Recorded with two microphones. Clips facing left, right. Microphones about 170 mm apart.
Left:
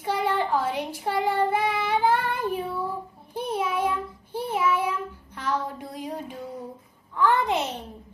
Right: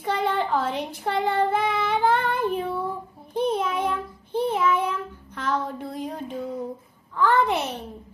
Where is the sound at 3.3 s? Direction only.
10° left (ahead or behind).